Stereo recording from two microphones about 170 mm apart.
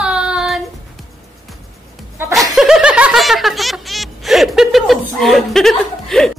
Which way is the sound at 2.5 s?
5° right (ahead or behind).